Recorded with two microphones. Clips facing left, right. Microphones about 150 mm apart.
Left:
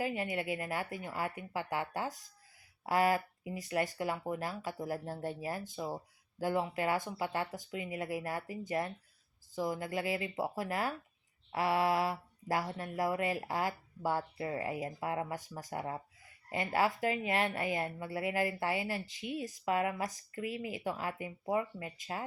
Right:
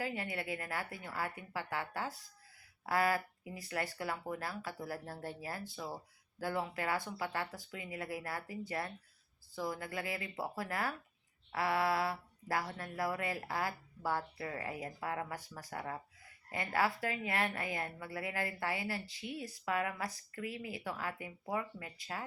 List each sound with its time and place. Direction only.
0.0 s a woman's voice: 15° left (ahead or behind)